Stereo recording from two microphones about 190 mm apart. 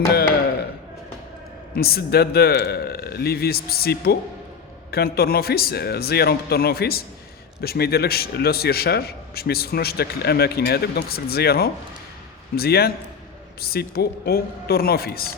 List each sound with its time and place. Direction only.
1.7 s a man's voice: 55° left (ahead or behind)